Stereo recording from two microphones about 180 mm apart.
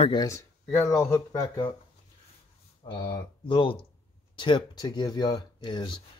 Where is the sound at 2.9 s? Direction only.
25° left (ahead or behind).